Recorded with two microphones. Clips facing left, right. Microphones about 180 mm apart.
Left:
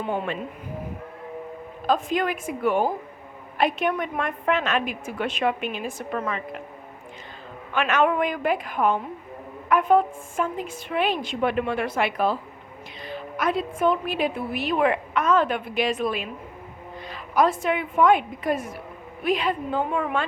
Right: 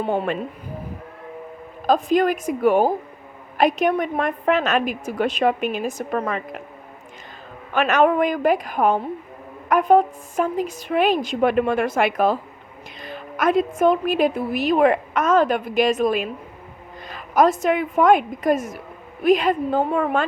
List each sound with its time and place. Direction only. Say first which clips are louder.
0.0 s a woman's voice: right 5 dB; 40° right (ahead or behind)
1.9 s a woman's voice: right 6 dB; 40° right (ahead or behind)
7.7 s a woman's voice: right 4 dB; 40° right (ahead or behind)